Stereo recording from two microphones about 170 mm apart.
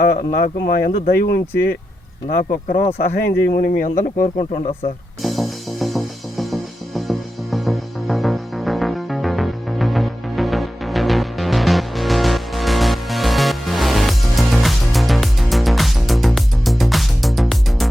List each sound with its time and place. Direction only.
0.0 s speech: 60° left (ahead or behind)
2.3 s speech: 55° left (ahead or behind)
3.2 s speech: 65° left (ahead or behind)
5.2 s music: centre (ahead or behind)